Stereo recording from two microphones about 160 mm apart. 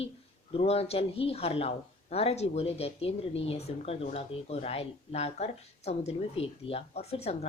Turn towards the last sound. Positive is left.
turn(degrees=40)  # may be behind; listen again after turning